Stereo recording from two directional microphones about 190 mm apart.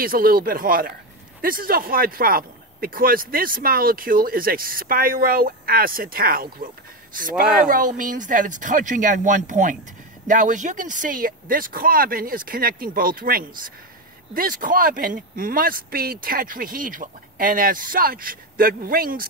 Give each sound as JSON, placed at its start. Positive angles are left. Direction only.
{"t": 0.0, "sound": "speech", "side_deg": -50}
{"t": 7.3, "sound": "speech", "side_deg": -5}
{"t": 7.6, "sound": "speech", "side_deg": -45}